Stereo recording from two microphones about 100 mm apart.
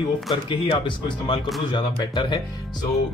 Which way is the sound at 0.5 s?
55° left (ahead or behind).